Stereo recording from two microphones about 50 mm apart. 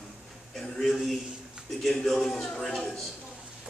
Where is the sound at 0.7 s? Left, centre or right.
Centre.